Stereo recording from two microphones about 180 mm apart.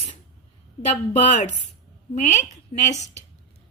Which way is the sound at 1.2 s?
45° left (ahead or behind).